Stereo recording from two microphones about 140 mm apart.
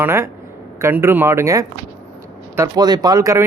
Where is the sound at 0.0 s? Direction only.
15° right (ahead or behind).